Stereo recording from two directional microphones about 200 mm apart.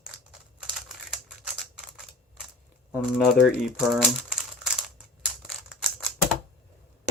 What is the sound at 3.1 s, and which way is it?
Speech, centre (ahead or behind).